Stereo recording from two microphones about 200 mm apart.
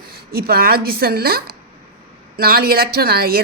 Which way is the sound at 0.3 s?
50° right (ahead or behind).